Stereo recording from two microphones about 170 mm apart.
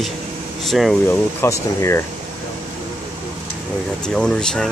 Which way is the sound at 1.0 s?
15° left (ahead or behind).